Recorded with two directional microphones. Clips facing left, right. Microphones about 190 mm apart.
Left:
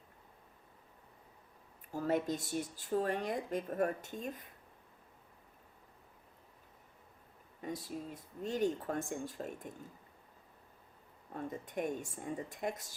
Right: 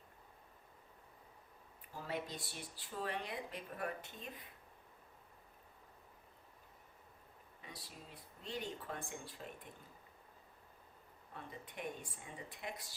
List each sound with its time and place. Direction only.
1.9 s speech: 45° left (ahead or behind)
7.6 s speech: 45° left (ahead or behind)
11.3 s speech: 45° left (ahead or behind)